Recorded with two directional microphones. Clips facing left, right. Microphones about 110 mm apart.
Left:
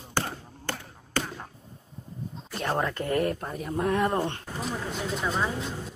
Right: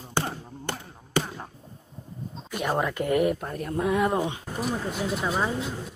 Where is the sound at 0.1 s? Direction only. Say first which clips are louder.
Right 2 dB; 15° right (ahead or behind).